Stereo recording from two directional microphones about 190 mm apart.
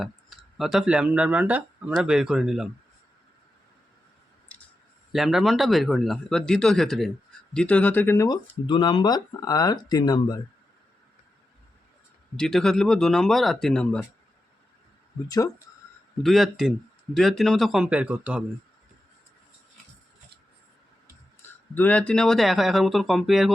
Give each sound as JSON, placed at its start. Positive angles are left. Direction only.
{"t": 0.0, "sound": "speech", "side_deg": 0}
{"t": 4.5, "sound": "clicking", "side_deg": 5}
{"t": 5.1, "sound": "speech", "side_deg": 0}
{"t": 12.4, "sound": "speech", "side_deg": 5}
{"t": 16.2, "sound": "speech", "side_deg": 0}
{"t": 21.8, "sound": "speech", "side_deg": 5}